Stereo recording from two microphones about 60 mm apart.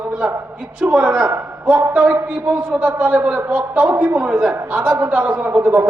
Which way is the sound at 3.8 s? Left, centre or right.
Right.